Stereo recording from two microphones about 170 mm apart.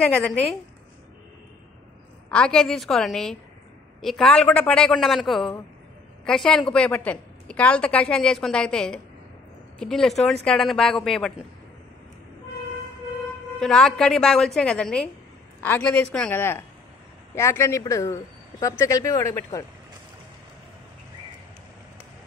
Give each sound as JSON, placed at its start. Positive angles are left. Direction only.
{"t": 0.0, "sound": "a woman's voice", "side_deg": 5}
{"t": 2.3, "sound": "a woman's voice", "side_deg": 5}
{"t": 13.6, "sound": "a woman's voice", "side_deg": 5}